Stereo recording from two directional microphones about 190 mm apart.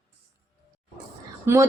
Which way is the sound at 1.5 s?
15° right (ahead or behind).